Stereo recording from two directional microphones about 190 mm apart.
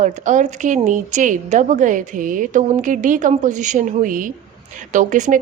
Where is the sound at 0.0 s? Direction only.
40° right (ahead or behind).